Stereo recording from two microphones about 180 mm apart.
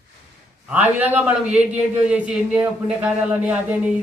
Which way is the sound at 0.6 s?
10° right (ahead or behind).